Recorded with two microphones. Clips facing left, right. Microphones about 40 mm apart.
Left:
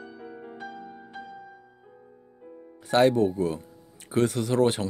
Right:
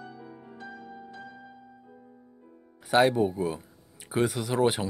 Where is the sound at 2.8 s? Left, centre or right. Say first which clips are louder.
Left 2 dB; centre.